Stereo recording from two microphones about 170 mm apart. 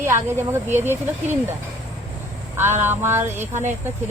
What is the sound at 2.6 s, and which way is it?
Speech, 15° right (ahead or behind).